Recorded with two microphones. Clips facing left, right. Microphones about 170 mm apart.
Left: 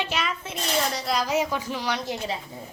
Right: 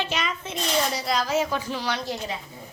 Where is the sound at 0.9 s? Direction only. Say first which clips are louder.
Right 1 dB; 5° right (ahead or behind).